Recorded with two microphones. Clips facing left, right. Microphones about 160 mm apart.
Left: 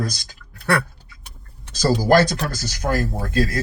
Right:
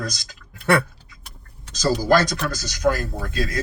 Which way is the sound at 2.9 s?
40° left (ahead or behind).